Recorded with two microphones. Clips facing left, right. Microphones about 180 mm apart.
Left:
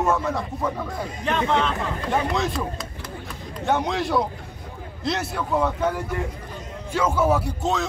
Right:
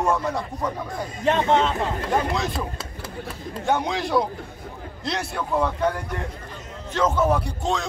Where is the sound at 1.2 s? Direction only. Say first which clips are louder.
Right 3 dB; 30° right (ahead or behind).